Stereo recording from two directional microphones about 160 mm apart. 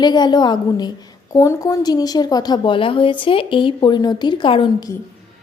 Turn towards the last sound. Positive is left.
turn(degrees=30)  # may be behind; listen again after turning